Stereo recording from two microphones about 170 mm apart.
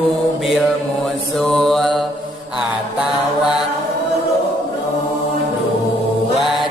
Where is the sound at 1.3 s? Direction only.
Centre (ahead or behind).